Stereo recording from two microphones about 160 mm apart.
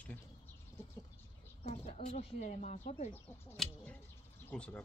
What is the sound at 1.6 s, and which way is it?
Speech, 45° left (ahead or behind).